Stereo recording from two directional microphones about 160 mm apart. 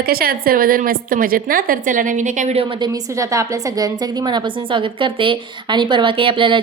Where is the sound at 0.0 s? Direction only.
70° right (ahead or behind); by 2.6 s 50° right (ahead or behind).